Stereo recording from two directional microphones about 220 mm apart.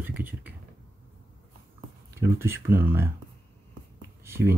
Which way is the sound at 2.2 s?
10° right (ahead or behind).